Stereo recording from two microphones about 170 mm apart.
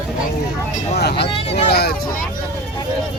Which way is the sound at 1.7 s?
65° left (ahead or behind).